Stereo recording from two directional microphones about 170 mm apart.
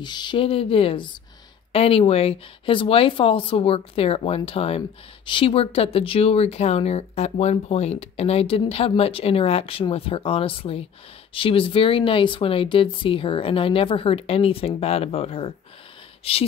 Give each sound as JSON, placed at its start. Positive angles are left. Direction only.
{"t": 0.0, "sound": "speech", "side_deg": 25}